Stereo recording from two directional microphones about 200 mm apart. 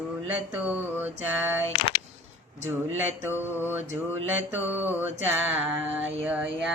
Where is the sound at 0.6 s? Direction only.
10° right (ahead or behind).